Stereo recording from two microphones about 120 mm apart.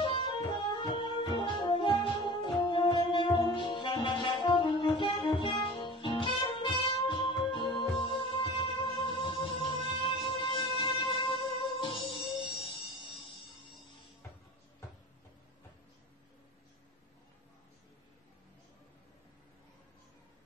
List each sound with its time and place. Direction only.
0.0 s music: 45° left (ahead or behind)